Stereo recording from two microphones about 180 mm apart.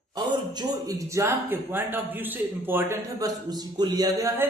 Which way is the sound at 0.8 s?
15° right (ahead or behind).